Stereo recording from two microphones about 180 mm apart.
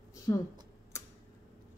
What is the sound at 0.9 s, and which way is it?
Tick-tock, 15° left (ahead or behind).